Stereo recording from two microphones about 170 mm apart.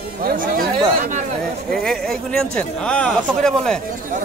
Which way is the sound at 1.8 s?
5° left (ahead or behind).